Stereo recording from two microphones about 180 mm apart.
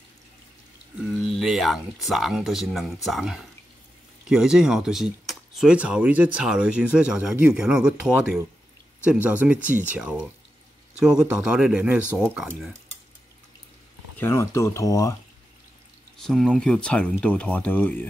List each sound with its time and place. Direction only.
1.2 s speech: centre (ahead or behind)
14.1 s speech: 15° left (ahead or behind)
16.2 s speech: centre (ahead or behind)